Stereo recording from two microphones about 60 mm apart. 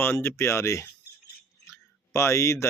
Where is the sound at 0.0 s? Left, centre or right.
Left.